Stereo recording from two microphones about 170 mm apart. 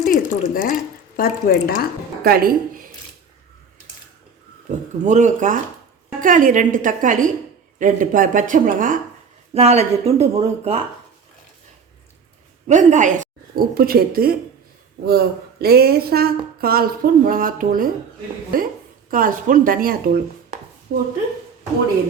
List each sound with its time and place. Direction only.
0.0 s a sound: 55° left (ahead or behind)
1.1 s speech: 60° left (ahead or behind)
2.2 s a woman's voice: 60° right (ahead or behind)
5.0 s speech: 45° right (ahead or behind)
9.6 s speech: 40° right (ahead or behind)
12.6 s a woman's voice: 45° right (ahead or behind)
20.9 s speech: 90° right